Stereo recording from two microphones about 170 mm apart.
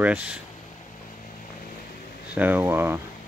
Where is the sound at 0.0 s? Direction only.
10° right (ahead or behind).